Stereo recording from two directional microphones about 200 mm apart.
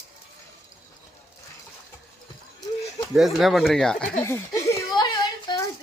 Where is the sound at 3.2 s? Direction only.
Centre (ahead or behind); by 5.0 s 15° left (ahead or behind).